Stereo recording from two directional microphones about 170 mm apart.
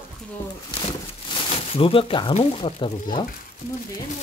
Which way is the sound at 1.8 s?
30° left (ahead or behind).